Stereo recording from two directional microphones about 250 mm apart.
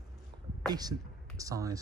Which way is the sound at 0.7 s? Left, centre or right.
Centre.